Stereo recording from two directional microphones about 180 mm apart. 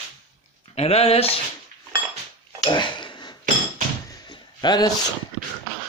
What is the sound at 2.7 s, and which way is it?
Dishes, 25° left (ahead or behind).